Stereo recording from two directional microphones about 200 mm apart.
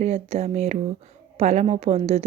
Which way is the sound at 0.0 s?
30° right (ahead or behind).